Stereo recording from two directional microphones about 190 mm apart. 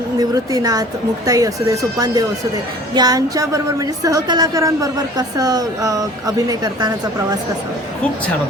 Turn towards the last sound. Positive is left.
turn(degrees=-20)  # may be behind; listen again after turning